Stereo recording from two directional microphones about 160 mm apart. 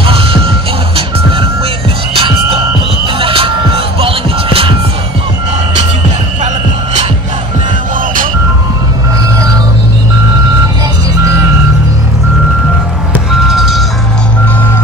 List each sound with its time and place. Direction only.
0.0 s reversing beeps: 35° right (ahead or behind)
2.1 s music: 35° right (ahead or behind)
13.3 s vehicle: centre (ahead or behind)